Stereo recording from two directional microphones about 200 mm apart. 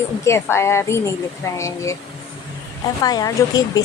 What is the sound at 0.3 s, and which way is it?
A woman's voice, 15° left (ahead or behind).